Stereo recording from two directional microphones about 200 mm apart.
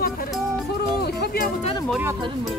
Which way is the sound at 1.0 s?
55° left (ahead or behind).